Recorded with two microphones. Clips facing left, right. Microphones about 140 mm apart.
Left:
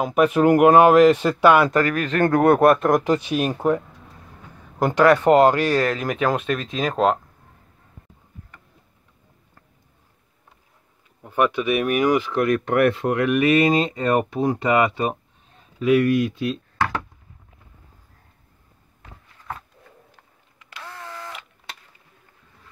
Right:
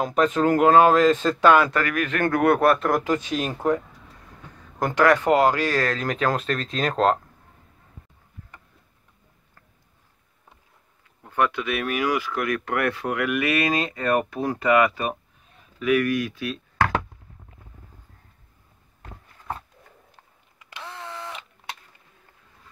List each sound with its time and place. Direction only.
0.0 s speech: 10° left (ahead or behind)
1.8 s speech: 30° left (ahead or behind); by 7.2 s 5° left (ahead or behind)
11.2 s speech: 15° left (ahead or behind)
20.7 s a sound: 20° right (ahead or behind)